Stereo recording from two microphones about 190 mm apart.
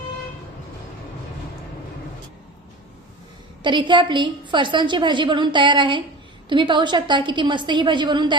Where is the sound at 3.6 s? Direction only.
25° right (ahead or behind).